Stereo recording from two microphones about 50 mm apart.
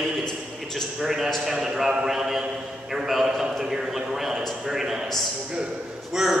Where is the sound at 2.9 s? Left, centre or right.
Centre.